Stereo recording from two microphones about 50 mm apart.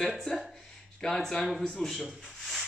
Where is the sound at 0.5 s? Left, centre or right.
Centre.